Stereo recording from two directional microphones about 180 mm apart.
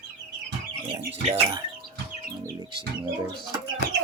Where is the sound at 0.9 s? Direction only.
25° right (ahead or behind).